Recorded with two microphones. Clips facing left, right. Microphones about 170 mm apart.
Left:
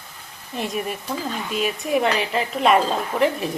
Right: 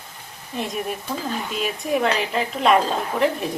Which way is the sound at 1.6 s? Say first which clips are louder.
Left 1 dB; centre (ahead or behind).